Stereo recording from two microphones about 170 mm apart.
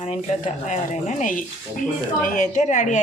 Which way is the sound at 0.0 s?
40° left (ahead or behind).